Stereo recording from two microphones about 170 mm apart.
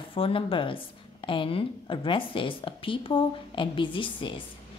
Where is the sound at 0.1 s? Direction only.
30° left (ahead or behind).